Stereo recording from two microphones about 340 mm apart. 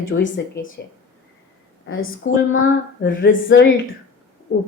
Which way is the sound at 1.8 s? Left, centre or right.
Left.